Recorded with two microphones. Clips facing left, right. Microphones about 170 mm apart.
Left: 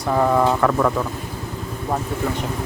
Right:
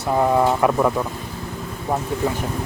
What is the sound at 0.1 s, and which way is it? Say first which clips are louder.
Speech: even; 15° right (ahead or behind).